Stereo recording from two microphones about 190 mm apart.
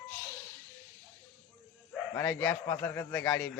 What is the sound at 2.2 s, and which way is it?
Speech, 5° left (ahead or behind).